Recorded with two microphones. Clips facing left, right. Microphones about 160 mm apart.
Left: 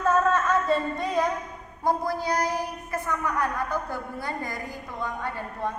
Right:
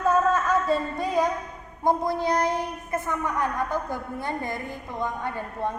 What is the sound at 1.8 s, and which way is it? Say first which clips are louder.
A woman's voice: right 2 dB; 20° right (ahead or behind).